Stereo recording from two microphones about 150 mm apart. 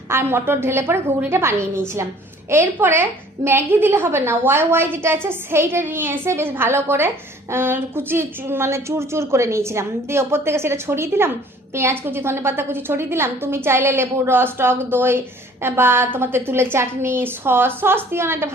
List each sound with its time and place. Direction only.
0.1 s a woman's voice: 15° right (ahead or behind)